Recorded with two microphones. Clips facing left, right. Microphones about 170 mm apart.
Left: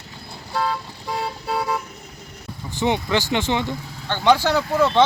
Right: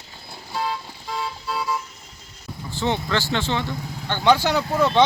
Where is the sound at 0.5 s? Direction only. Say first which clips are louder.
Left 3 dB; 60° left (ahead or behind).